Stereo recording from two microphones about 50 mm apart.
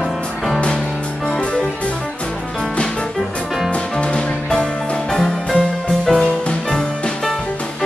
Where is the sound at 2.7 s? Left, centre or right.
Centre.